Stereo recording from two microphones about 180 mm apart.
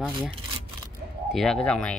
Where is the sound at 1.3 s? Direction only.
Centre (ahead or behind).